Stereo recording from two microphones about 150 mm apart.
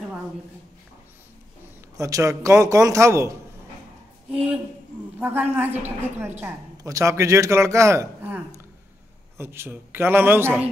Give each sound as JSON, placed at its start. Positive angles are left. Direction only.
{"t": 2.0, "sound": "a man's voice", "side_deg": -20}
{"t": 4.3, "sound": "a man's voice", "side_deg": -5}